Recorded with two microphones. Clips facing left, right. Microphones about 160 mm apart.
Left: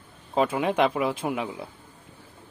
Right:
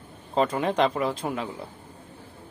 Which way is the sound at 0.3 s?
5° left (ahead or behind).